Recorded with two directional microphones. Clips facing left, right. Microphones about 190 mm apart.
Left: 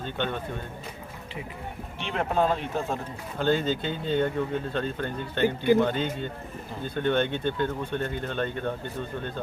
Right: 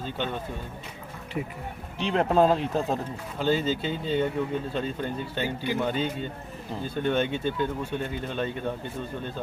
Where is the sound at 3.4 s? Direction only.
5° right (ahead or behind).